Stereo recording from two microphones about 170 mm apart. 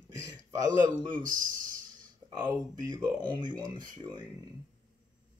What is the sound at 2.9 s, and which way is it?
Speech, 25° right (ahead or behind).